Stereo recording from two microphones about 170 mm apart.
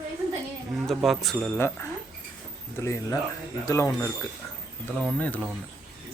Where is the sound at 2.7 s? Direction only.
15° left (ahead or behind).